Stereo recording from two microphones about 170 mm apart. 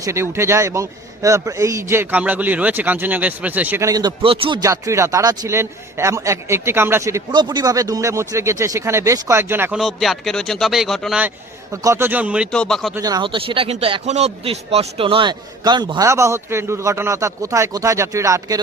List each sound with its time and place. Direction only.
0.0 s speech: 15° right (ahead or behind)
9.7 s speech: centre (ahead or behind)
11.7 s speech: 20° right (ahead or behind)
12.5 s speech: 5° left (ahead or behind)
12.9 s speech: 20° right (ahead or behind)